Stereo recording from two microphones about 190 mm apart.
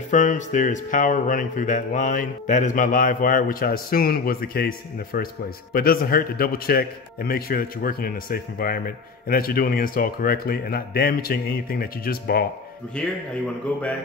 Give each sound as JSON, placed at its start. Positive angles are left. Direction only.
{"t": 0.1, "sound": "speech", "side_deg": 40}
{"t": 13.0, "sound": "speech", "side_deg": 5}